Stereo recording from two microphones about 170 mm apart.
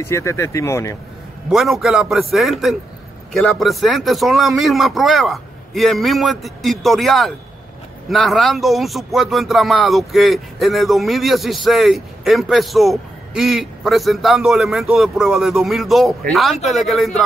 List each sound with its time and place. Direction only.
0.0 s speech: 15° left (ahead or behind)
1.5 s speech: centre (ahead or behind)